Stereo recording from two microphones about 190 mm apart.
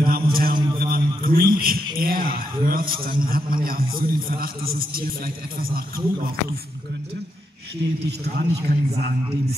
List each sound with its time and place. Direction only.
0.0 s mantra: 50° right (ahead or behind)
0.7 s a sound: 50° right (ahead or behind)
3.0 s a man's voice: 50° right (ahead or behind)
8.4 s a man's voice: 55° right (ahead or behind)